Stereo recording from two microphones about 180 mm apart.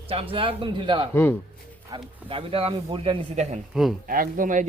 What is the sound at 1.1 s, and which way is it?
Speech, 10° left (ahead or behind).